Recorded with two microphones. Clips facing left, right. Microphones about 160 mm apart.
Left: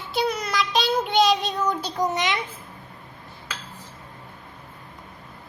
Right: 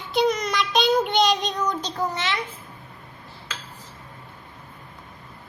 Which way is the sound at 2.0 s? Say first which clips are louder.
Left 5 dB; 15° left (ahead or behind).